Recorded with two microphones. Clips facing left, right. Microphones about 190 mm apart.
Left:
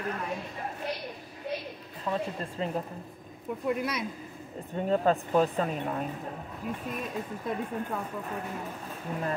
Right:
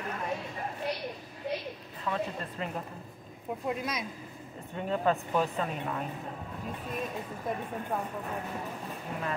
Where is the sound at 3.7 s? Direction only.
60° left (ahead or behind).